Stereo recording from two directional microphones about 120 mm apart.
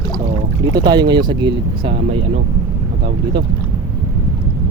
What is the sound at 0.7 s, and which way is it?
Speech, 35° right (ahead or behind).